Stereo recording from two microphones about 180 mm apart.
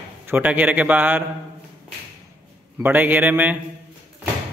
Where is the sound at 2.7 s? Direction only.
10° right (ahead or behind).